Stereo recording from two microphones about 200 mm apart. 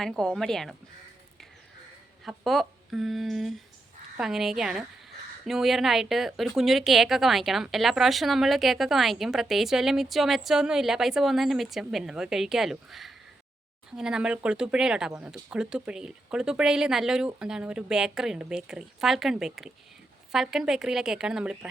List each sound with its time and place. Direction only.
0.0 s a woman's voice: 5° left (ahead or behind)
2.2 s a woman's voice: centre (ahead or behind)